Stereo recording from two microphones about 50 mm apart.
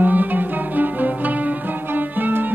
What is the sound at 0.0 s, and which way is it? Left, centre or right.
Music, right.